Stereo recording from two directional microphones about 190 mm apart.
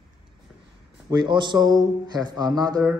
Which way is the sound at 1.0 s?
25° right (ahead or behind).